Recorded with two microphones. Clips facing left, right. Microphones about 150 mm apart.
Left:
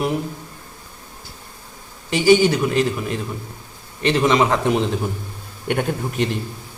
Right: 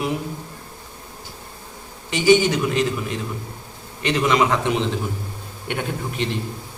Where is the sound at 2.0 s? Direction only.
35° left (ahead or behind).